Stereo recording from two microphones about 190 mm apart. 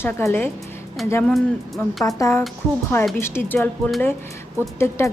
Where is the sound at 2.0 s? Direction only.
15° left (ahead or behind).